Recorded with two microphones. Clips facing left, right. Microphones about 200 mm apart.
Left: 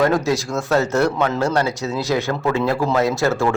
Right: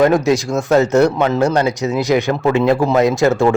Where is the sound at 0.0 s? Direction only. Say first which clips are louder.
Right 5 dB; 20° right (ahead or behind).